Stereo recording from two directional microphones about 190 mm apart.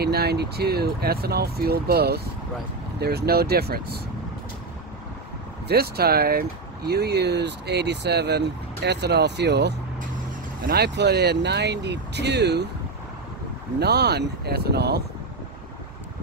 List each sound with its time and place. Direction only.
0.0 s speech: 55° right (ahead or behind)
5.7 s speech: 55° right (ahead or behind)
13.7 s speech: 60° right (ahead or behind)